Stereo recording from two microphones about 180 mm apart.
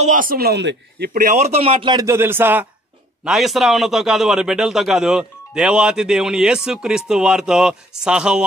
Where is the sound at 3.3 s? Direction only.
Centre (ahead or behind).